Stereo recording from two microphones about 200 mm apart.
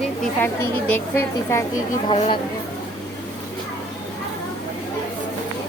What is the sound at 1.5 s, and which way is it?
Speech, 15° left (ahead or behind).